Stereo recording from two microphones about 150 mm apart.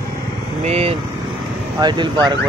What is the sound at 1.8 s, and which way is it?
Speech, 30° right (ahead or behind).